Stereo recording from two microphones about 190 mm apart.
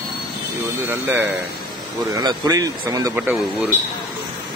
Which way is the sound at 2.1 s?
20° right (ahead or behind).